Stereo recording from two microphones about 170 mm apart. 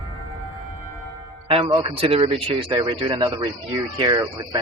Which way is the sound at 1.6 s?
30° right (ahead or behind).